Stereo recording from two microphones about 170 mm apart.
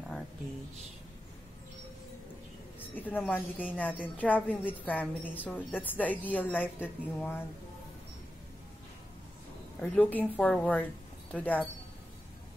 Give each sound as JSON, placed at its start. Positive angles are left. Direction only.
{"t": 2.8, "sound": "a woman's voice", "side_deg": 10}
{"t": 9.8, "sound": "a woman's voice", "side_deg": 10}